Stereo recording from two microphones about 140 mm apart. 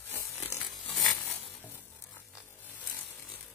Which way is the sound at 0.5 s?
5° left (ahead or behind).